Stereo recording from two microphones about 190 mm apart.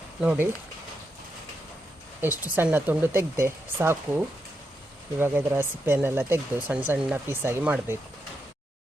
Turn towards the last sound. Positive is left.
turn(degrees=-10)  # may be behind; listen again after turning